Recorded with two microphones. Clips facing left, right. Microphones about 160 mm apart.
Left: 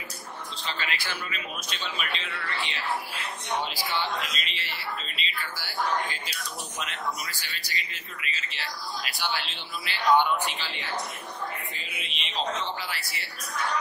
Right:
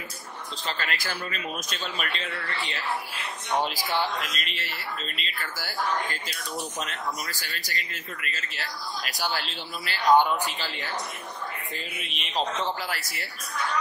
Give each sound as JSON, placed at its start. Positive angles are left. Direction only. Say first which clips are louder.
{"t": 0.7, "sound": "speech", "louder": "right 2 dB", "side_deg": -45}